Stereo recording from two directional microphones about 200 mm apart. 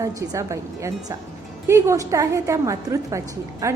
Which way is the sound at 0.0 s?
15° right (ahead or behind).